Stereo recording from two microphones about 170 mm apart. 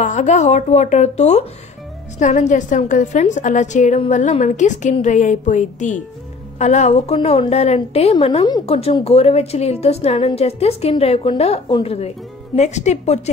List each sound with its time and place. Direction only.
0.0 s a woman's voice: 45° left (ahead or behind)